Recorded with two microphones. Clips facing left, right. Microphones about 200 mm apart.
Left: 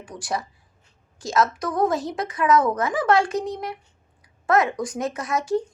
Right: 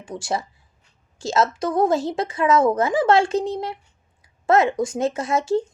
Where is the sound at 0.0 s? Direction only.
25° right (ahead or behind).